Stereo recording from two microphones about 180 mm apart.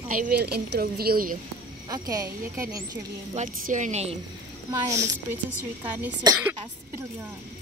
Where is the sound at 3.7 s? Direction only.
40° right (ahead or behind).